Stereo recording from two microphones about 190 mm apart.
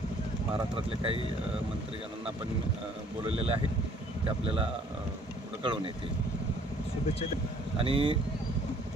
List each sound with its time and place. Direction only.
0.8 s a man's voice: 30° right (ahead or behind)
3.2 s a man's voice: 30° right (ahead or behind)
7.8 s a man's voice: 30° right (ahead or behind)